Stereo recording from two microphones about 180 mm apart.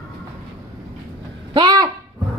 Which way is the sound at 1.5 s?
20° right (ahead or behind).